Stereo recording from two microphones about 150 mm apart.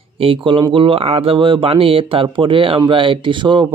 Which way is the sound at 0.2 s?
35° right (ahead or behind).